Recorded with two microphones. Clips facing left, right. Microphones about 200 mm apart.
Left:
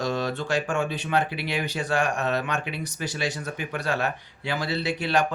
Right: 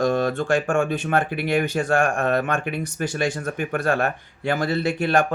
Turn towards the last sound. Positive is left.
turn(degrees=-50)  # may be behind; listen again after turning